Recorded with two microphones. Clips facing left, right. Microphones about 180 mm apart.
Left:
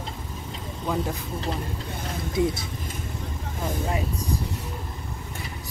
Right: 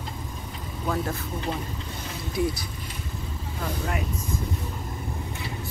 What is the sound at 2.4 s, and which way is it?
Speech, 20° left (ahead or behind).